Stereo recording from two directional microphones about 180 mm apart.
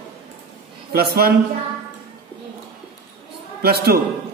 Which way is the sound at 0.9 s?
60° right (ahead or behind).